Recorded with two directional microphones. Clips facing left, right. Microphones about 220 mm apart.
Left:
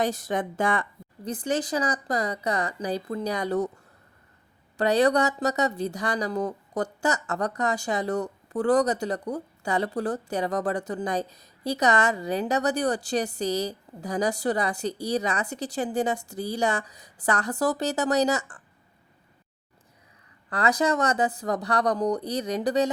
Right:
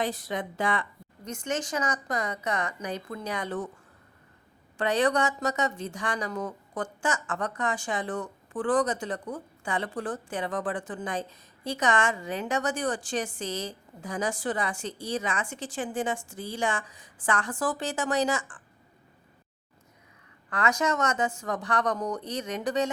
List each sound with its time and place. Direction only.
0.0 s speech: 45° left (ahead or behind)
1.2 s speech: 35° left (ahead or behind)
4.8 s speech: 35° left (ahead or behind)
20.5 s speech: 35° left (ahead or behind)